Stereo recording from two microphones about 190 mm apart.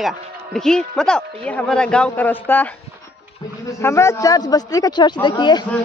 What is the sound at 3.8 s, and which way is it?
A man's voice, 15° left (ahead or behind).